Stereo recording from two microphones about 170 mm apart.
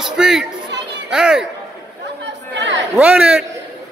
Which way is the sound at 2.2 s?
90° right.